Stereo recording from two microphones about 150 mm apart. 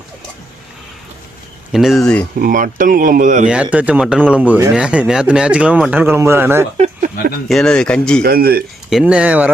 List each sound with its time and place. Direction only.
1.7 s speech: centre (ahead or behind)
2.4 s speech: 65° right (ahead or behind)
3.5 s speech: 10° right (ahead or behind)
7.4 s speech: 5° left (ahead or behind)
8.2 s speech: 90° right
8.9 s speech: 5° right (ahead or behind)